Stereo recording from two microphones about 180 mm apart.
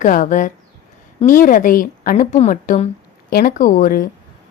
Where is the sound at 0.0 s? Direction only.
45° left (ahead or behind).